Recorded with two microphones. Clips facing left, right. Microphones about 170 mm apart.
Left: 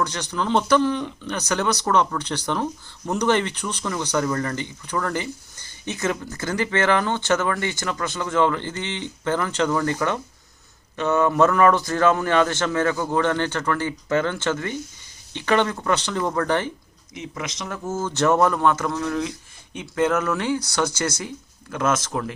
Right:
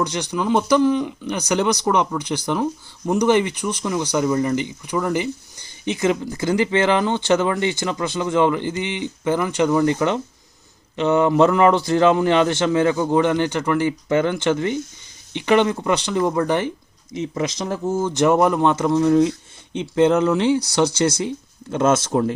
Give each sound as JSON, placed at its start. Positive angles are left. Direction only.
{"t": 0.0, "sound": "speech", "side_deg": -15}
{"t": 17.2, "sound": "speech", "side_deg": -30}
{"t": 17.8, "sound": "speech", "side_deg": -15}